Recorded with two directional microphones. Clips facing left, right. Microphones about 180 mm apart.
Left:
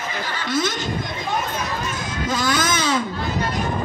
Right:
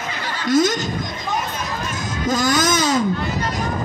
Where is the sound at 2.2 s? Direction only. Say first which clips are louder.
Right 4 dB; 45° right (ahead or behind).